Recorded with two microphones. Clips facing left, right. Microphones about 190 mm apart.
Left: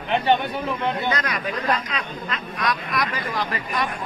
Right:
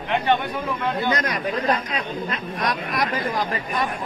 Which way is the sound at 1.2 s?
35° right (ahead or behind).